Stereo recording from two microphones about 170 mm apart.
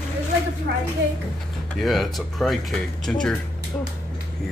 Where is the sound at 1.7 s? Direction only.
Centre (ahead or behind).